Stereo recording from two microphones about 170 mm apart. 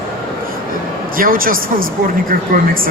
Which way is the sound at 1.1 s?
55° right (ahead or behind).